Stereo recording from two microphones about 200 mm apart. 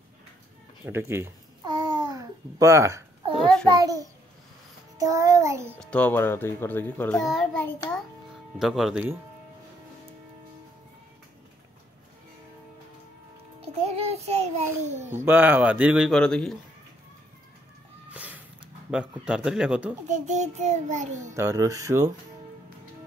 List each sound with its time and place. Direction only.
0.8 s a child's voice: 10° right (ahead or behind)
1.7 s babbling: 20° right (ahead or behind)
3.3 s a child's voice: centre (ahead or behind)
3.6 s speech: 20° right (ahead or behind)
5.8 s a child's voice: 5° left (ahead or behind)
13.6 s music: 30° right (ahead or behind)
15.2 s speech: 10° right (ahead or behind)
18.1 s a sound: 5° right (ahead or behind)
18.9 s speech: 5° right (ahead or behind)
20.1 s a child's voice: 35° right (ahead or behind)
21.4 s speech: 15° right (ahead or behind)